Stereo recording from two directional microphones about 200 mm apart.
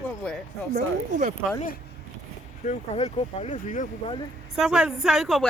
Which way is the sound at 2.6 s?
35° left (ahead or behind).